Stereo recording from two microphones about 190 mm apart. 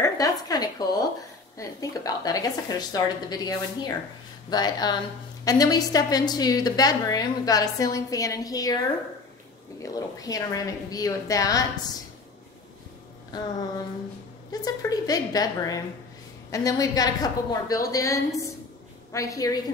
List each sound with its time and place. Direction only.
0.0 s a woman's voice: 20° left (ahead or behind)
9.8 s a woman's voice: 20° left (ahead or behind)
13.3 s a woman's voice: 20° left (ahead or behind)
14.5 s a woman's voice: 20° left (ahead or behind)